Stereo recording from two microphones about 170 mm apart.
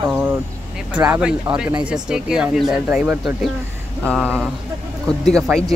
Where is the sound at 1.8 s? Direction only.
5° right (ahead or behind).